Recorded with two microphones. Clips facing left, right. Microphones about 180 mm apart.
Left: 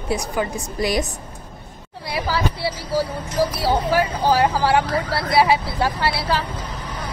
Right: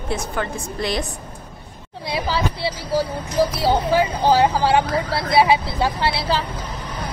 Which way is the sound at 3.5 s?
20° right (ahead or behind).